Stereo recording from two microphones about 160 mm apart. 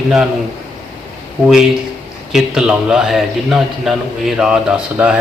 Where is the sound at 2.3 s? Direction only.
5° right (ahead or behind).